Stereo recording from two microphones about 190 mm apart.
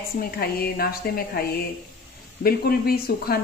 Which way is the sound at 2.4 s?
50° left (ahead or behind).